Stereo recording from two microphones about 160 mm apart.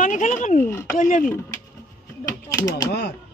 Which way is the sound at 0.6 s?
15° left (ahead or behind).